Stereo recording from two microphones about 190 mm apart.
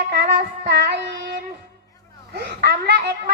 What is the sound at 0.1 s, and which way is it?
Child singing, 60° right (ahead or behind).